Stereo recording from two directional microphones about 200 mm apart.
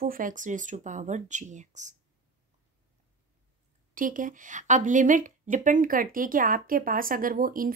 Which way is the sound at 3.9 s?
40° right (ahead or behind).